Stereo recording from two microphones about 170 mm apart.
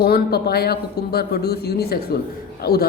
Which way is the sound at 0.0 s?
65° left (ahead or behind).